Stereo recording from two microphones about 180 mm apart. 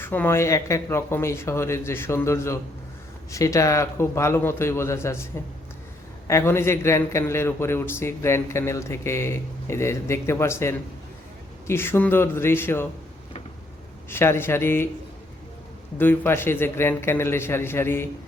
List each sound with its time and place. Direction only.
0.0 s a man's voice: 10° left (ahead or behind)
6.2 s a man's voice: 15° left (ahead or behind)
14.1 s a man's voice: 15° left (ahead or behind)
16.0 s a man's voice: 10° left (ahead or behind)